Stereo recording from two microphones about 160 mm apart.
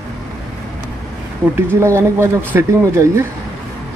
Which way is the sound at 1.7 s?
15° right (ahead or behind).